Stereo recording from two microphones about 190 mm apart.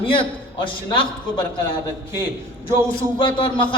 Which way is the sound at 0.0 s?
25° left (ahead or behind).